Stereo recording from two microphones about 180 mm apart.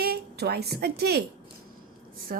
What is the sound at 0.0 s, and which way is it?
A woman's voice, 60° right (ahead or behind).